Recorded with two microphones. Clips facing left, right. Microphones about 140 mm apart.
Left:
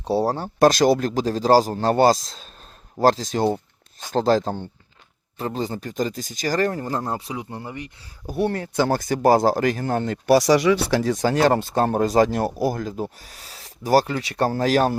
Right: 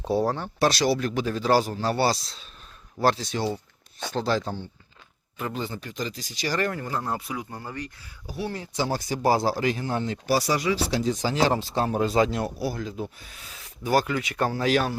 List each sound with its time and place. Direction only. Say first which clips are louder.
0.1 s speech: left 3 dB; 35° left (ahead or behind)
7.1 s speech: left 2 dB; 25° left (ahead or behind)
8.3 s speech: left 8 dB; 55° left (ahead or behind); by 14.9 s 40° left (ahead or behind)